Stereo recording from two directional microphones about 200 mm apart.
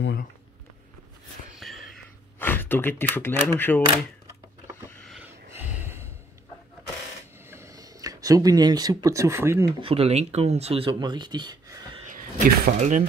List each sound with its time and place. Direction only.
1.6 s a sound: centre (ahead or behind)
2.3 s speech: 10° left (ahead or behind)
5.0 s a sound: centre (ahead or behind)
7.4 s speech: 15° right (ahead or behind)
9.8 s speech: 30° right (ahead or behind)
12.1 s speech: 40° right (ahead or behind)